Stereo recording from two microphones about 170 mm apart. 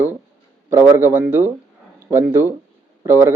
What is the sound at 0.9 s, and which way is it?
A man's voice, 10° right (ahead or behind).